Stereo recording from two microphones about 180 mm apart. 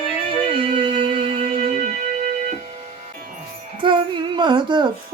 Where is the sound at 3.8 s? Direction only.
25° right (ahead or behind).